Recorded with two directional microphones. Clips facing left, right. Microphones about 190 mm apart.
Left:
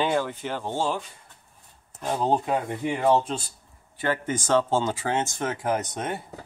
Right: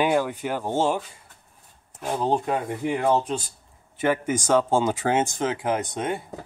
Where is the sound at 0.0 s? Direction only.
10° right (ahead or behind).